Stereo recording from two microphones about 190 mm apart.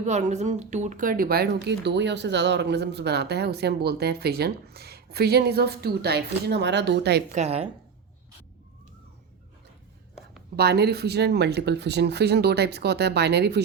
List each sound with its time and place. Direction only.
0.0 s speech: 35° right (ahead or behind); by 7.2 s 65° right (ahead or behind)
7.3 s a woman's voice: 35° right (ahead or behind)
10.6 s speech: 60° right (ahead or behind)